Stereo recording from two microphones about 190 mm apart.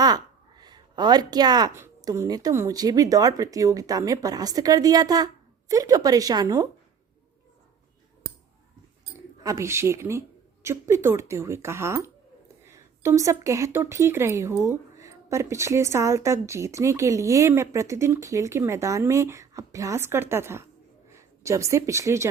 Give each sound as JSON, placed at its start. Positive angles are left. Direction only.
{"t": 0.0, "sound": "a woman's voice", "side_deg": -20}
{"t": 9.4, "sound": "speech", "side_deg": -15}